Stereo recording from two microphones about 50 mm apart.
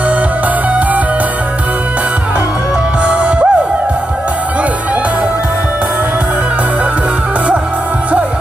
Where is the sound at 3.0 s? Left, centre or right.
Right.